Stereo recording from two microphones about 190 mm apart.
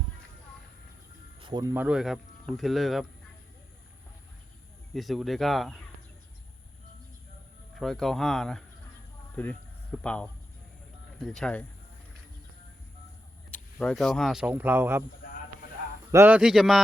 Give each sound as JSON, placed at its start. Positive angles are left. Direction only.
{"t": 1.4, "sound": "music", "side_deg": -25}
{"t": 1.7, "sound": "speech", "side_deg": -5}
{"t": 4.9, "sound": "speech", "side_deg": 0}
{"t": 7.8, "sound": "speech", "side_deg": 0}
{"t": 13.5, "sound": "speech", "side_deg": 5}
{"t": 16.1, "sound": "speech", "side_deg": -10}